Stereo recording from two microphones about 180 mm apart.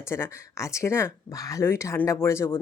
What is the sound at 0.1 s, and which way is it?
Speech, 15° left (ahead or behind).